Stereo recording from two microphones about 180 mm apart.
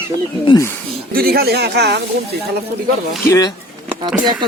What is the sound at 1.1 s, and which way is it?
Speech, 60° right (ahead or behind).